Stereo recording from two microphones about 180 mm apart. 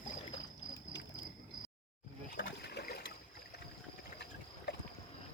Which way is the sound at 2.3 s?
65° left (ahead or behind).